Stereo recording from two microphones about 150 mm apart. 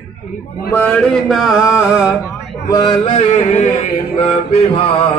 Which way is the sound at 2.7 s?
30° left (ahead or behind).